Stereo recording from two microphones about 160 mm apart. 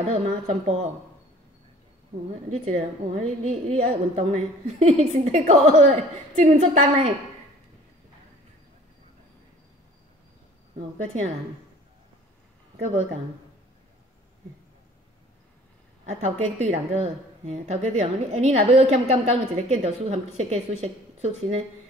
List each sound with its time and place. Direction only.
0.1 s speech: 40° right (ahead or behind)
2.5 s a woman's voice: 45° right (ahead or behind)
16.1 s a woman's voice: 45° right (ahead or behind)